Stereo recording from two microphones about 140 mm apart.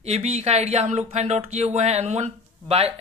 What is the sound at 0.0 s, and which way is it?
Speech, 50° right (ahead or behind).